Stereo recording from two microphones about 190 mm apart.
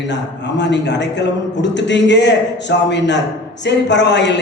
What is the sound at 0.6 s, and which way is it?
A man's voice, 65° left (ahead or behind).